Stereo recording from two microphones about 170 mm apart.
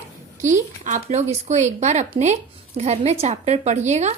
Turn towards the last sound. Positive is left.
turn(degrees=-40)  # may be behind; listen again after turning